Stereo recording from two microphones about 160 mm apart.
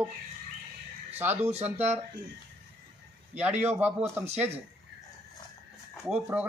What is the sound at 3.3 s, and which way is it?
Speech, 10° right (ahead or behind).